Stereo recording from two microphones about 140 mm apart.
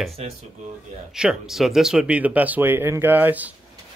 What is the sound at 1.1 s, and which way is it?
Speech, 5° right (ahead or behind).